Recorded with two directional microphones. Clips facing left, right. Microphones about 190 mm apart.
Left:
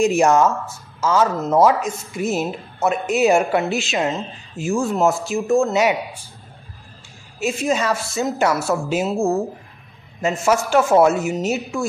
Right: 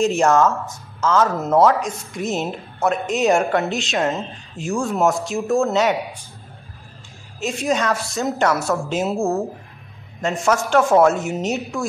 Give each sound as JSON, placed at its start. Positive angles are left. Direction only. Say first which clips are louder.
{"t": 0.0, "sound": "speech", "louder": "left 1 dB", "side_deg": 10}
{"t": 5.7, "sound": "speech", "louder": "even", "side_deg": 10}
{"t": 7.4, "sound": "speech", "louder": "left 1 dB", "side_deg": 5}